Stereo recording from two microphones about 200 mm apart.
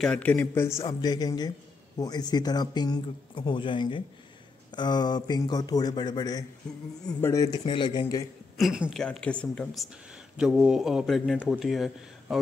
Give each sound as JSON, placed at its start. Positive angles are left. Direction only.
{"t": 0.0, "sound": "speech", "side_deg": 5}
{"t": 7.4, "sound": "speech", "side_deg": 25}
{"t": 8.5, "sound": "speech", "side_deg": 0}